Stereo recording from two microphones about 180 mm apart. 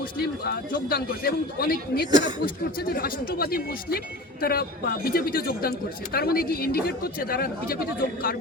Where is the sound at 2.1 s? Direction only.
25° right (ahead or behind).